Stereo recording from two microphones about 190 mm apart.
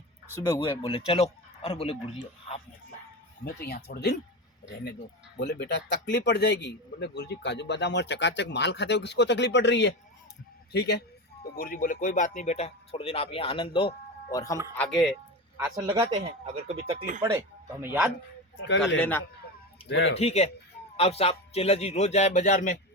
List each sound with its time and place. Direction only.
0.3 s speech: 20° left (ahead or behind)
3.4 s a man's voice: 55° left (ahead or behind)
5.4 s a man's voice: 60° left (ahead or behind)
11.5 s speech: 50° left (ahead or behind); by 14.6 s 20° left (ahead or behind)
14.8 s speech: centre (ahead or behind)
15.7 s speech: 25° right (ahead or behind)
17.7 s speech: 10° right (ahead or behind)
18.9 s a man's voice: 10° left (ahead or behind)
19.9 s a man's voice: 65° left (ahead or behind)
20.1 s speech: 35° left (ahead or behind)